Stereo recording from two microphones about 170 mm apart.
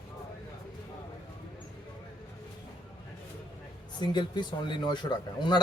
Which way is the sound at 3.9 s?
25° left (ahead or behind).